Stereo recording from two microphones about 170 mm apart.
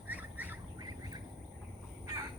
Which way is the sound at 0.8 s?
20° right (ahead or behind).